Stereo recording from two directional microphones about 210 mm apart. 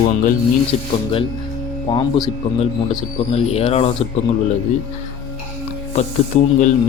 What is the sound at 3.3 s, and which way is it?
Speech, 30° left (ahead or behind).